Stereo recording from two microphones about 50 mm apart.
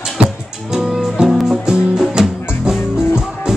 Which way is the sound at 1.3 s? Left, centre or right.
Centre.